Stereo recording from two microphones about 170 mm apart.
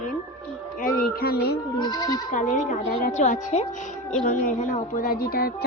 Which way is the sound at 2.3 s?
45° left (ahead or behind).